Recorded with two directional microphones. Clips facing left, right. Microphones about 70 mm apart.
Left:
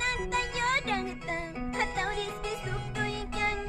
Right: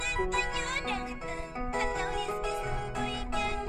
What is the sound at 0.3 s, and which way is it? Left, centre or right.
Music, left.